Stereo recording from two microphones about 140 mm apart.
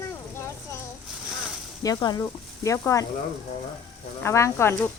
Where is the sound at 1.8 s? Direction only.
30° left (ahead or behind).